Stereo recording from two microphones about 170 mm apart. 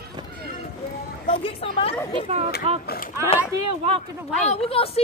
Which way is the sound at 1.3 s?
40° left (ahead or behind).